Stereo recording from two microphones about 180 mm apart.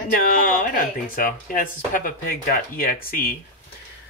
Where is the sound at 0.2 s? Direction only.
50° left (ahead or behind).